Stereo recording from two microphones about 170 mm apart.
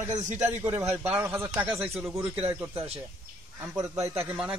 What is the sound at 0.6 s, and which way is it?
Speech, 20° right (ahead or behind).